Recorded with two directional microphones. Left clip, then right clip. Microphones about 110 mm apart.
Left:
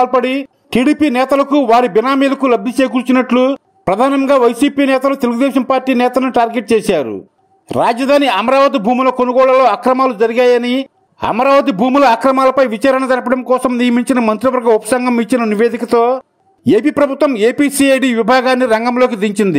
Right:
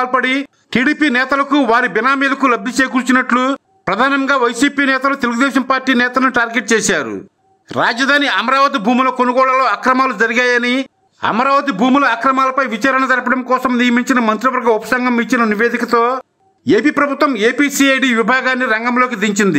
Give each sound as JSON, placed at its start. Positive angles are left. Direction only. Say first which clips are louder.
{"t": 0.1, "sound": "a man's voice", "louder": "left 1 dB", "side_deg": 35}
{"t": 3.8, "sound": "a man's voice", "louder": "left 2 dB", "side_deg": 40}
{"t": 9.6, "sound": "a man's voice", "louder": "left 2 dB", "side_deg": 50}
{"t": 16.6, "sound": "a man's voice", "louder": "left 1 dB", "side_deg": 50}